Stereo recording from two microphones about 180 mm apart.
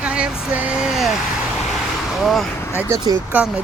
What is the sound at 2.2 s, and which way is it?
Speech, centre (ahead or behind).